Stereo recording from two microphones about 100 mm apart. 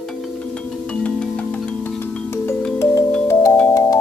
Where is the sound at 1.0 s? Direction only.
15° left (ahead or behind); by 4.0 s 35° left (ahead or behind).